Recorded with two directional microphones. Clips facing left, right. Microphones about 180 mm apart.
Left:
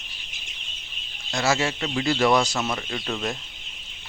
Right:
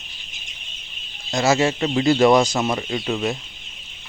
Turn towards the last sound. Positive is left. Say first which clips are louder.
# right 6 dB
turn(degrees=-10)  # may be behind; listen again after turning